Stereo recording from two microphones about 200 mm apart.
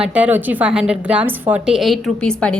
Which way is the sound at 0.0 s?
5° right (ahead or behind).